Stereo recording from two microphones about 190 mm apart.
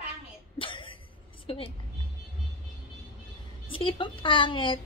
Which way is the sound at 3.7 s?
30° left (ahead or behind).